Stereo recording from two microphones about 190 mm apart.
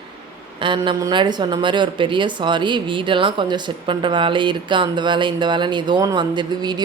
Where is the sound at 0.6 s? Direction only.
25° right (ahead or behind).